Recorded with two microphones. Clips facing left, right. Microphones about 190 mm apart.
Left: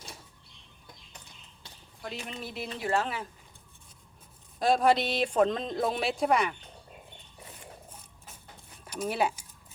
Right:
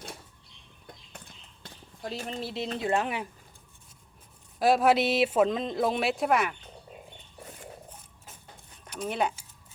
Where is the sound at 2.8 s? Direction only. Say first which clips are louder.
Right 1 dB; 20° right (ahead or behind).